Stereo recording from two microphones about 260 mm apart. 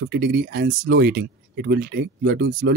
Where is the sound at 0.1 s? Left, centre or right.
Right.